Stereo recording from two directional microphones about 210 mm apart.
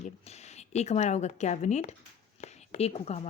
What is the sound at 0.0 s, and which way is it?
Speech, 30° left (ahead or behind).